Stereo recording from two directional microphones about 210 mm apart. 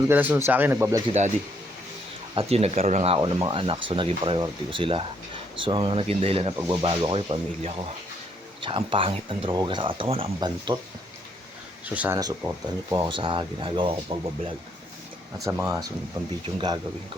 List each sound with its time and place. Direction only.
0.1 s speech: 10° right (ahead or behind)
2.3 s speech: 30° right (ahead or behind)
11.9 s speech: 10° right (ahead or behind)